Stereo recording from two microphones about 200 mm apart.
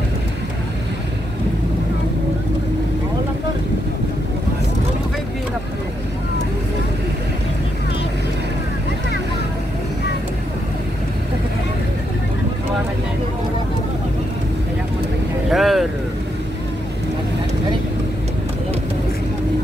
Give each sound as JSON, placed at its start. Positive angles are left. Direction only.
{"t": 15.5, "sound": "vehicle", "side_deg": 0}